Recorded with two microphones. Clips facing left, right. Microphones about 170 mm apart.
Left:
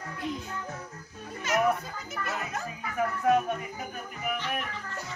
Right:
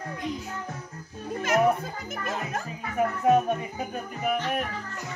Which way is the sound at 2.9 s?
25° right (ahead or behind).